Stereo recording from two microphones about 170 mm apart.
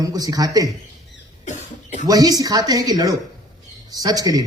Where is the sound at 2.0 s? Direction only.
20° right (ahead or behind).